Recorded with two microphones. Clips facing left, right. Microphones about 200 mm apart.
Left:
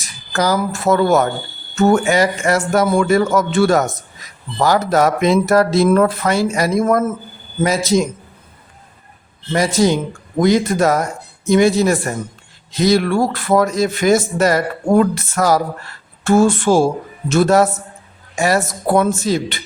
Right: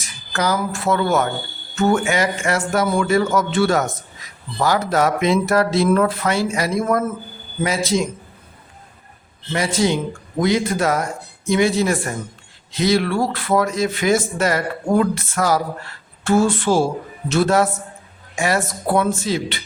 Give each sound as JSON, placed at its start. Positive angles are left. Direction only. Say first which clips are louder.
{"t": 0.0, "sound": "speech", "louder": "left 3 dB", "side_deg": 40}
{"t": 9.5, "sound": "speech", "louder": "left 4 dB", "side_deg": 40}